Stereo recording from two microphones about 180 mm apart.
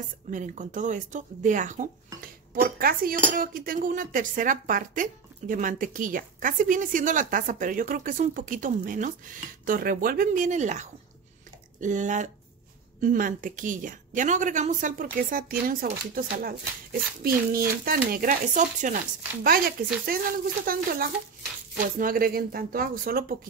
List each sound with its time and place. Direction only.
0.3 s speech: 45° right (ahead or behind)